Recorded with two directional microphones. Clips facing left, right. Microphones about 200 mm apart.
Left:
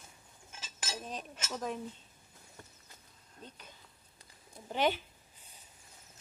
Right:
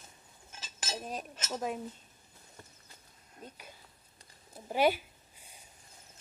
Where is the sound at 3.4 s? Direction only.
10° right (ahead or behind).